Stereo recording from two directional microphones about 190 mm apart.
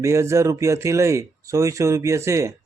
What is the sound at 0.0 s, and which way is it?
Speech, 15° right (ahead or behind).